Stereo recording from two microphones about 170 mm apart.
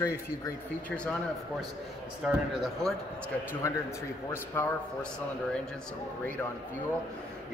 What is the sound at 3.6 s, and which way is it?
Speech, 15° left (ahead or behind).